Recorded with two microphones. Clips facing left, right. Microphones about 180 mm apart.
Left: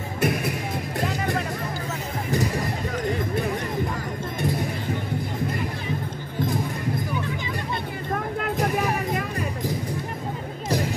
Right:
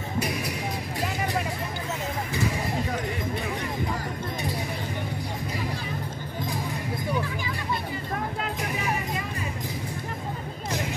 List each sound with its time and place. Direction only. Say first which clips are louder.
0.2 s music: left 6 dB; 55° left (ahead or behind)
8.4 s music: left 6 dB; 55° left (ahead or behind)